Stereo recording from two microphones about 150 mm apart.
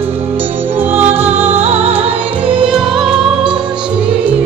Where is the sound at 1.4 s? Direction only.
45° right (ahead or behind).